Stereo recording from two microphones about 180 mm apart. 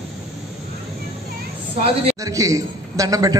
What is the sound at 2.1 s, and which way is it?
A man's voice, 20° right (ahead or behind).